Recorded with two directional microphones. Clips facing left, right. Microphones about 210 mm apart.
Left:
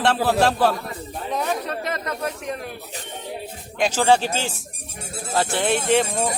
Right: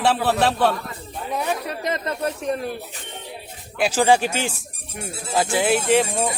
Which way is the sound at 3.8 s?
10° right (ahead or behind).